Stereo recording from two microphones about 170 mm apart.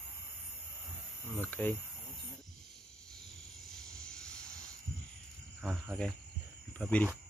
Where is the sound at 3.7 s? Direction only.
5° left (ahead or behind).